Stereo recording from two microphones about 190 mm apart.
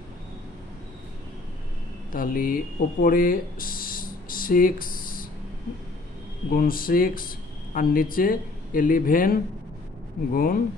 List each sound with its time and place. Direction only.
2.1 s speech: 45° left (ahead or behind)
6.5 s speech: 50° left (ahead or behind)